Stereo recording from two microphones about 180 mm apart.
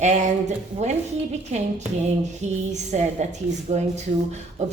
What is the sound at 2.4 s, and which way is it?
A woman's voice, 40° right (ahead or behind).